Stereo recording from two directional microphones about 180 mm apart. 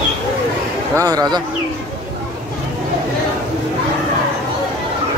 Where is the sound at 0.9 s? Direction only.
20° right (ahead or behind).